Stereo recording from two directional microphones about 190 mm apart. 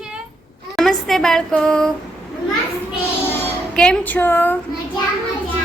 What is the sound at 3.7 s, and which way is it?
Speech, 5° left (ahead or behind).